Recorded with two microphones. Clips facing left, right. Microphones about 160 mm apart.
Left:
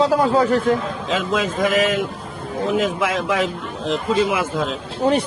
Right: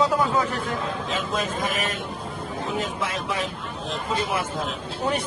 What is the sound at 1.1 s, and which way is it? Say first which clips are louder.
Speech: left 9 dB; 90° left.